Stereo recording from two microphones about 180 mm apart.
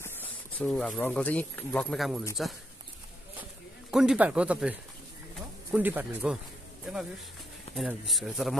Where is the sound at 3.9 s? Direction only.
5° right (ahead or behind).